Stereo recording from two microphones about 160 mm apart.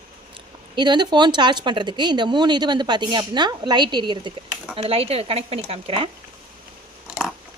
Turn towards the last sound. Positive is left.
turn(degrees=-5)  # may be behind; listen again after turning